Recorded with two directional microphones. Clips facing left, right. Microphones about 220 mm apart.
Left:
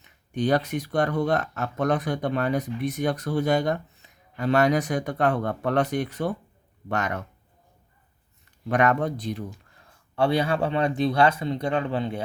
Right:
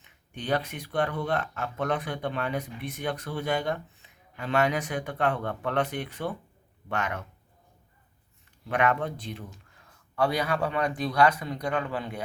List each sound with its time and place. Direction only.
0.0 s speech: 40° left (ahead or behind)
8.7 s speech: 40° left (ahead or behind)
10.2 s speech: 25° left (ahead or behind)